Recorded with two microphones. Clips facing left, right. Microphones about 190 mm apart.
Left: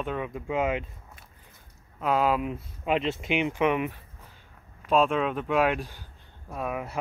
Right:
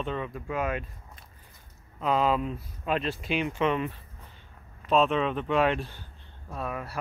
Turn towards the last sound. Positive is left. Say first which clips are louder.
# left 2 dB
turn(degrees=15)  # may be behind; listen again after turning